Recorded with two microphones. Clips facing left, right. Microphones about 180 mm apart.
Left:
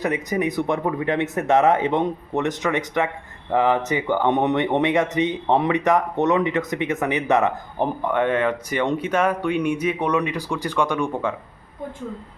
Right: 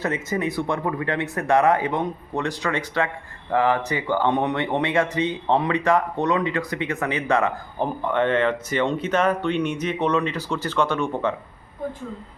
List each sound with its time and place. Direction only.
0.0 s speech: 15° left (ahead or behind)